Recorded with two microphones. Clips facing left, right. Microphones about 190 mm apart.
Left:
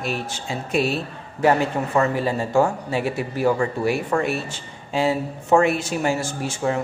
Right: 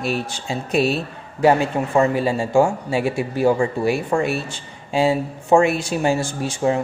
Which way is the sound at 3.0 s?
25° right (ahead or behind).